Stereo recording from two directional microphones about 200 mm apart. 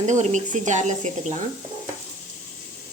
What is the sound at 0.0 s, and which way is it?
A woman's voice, 35° right (ahead or behind).